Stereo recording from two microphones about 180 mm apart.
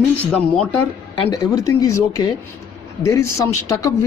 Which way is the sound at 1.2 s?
20° left (ahead or behind).